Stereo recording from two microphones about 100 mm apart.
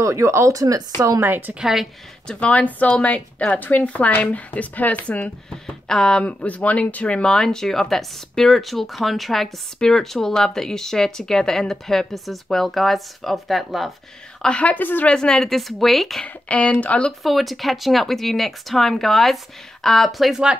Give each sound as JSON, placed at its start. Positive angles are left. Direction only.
{"t": 0.0, "sound": "speech", "side_deg": -30}
{"t": 1.2, "sound": "a woman's voice", "side_deg": -20}
{"t": 1.5, "sound": "a woman's voice", "side_deg": -5}
{"t": 2.2, "sound": "a woman's voice", "side_deg": 15}
{"t": 14.4, "sound": "a woman's voice", "side_deg": 10}
{"t": 15.1, "sound": "a woman's voice", "side_deg": 5}
{"t": 16.4, "sound": "a woman's voice", "side_deg": 10}
{"t": 17.2, "sound": "a woman's voice", "side_deg": 0}